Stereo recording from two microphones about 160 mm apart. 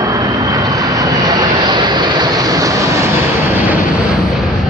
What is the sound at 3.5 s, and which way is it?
Vehicle, 10° right (ahead or behind).